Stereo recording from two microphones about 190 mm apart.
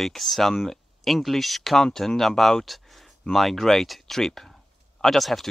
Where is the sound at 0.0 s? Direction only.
Centre (ahead or behind).